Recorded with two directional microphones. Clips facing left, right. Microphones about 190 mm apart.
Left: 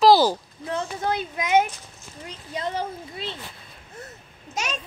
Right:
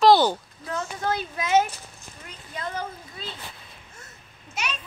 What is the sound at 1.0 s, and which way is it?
Speech, 20° left (ahead or behind).